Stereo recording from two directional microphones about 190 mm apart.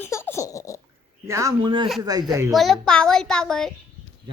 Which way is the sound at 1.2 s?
15° right (ahead or behind).